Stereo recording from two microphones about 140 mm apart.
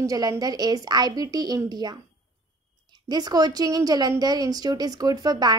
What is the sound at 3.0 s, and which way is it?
A woman's voice, 30° right (ahead or behind).